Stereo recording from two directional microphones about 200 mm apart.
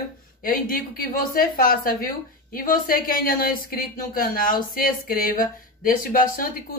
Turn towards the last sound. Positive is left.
turn(degrees=45)  # may be behind; listen again after turning